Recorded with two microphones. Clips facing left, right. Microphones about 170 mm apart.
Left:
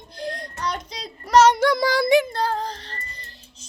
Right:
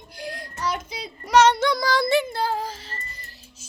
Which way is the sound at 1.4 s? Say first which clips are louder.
Left 2 dB; 10° left (ahead or behind).